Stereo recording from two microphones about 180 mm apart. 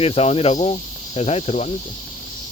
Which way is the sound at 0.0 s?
35° left (ahead or behind).